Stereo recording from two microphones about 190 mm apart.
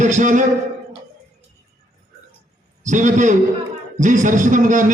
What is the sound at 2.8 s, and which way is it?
A man's voice, 40° right (ahead or behind).